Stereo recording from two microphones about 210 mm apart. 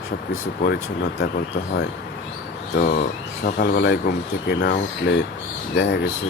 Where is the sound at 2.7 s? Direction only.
40° left (ahead or behind).